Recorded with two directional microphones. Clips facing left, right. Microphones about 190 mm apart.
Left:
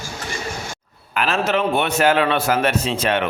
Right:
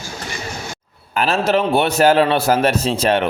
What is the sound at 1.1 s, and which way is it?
A man's voice, 35° right (ahead or behind).